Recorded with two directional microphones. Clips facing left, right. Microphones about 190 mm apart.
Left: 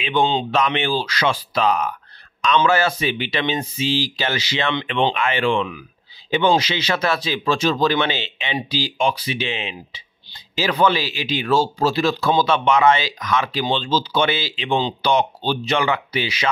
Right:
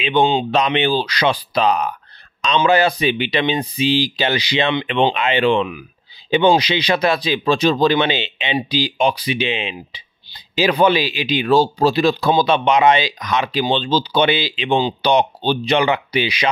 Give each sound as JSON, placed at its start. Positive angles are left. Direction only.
{"t": 0.0, "sound": "speech", "side_deg": -20}